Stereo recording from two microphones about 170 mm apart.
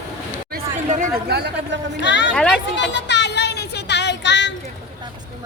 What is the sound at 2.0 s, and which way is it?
Speech, 90° left.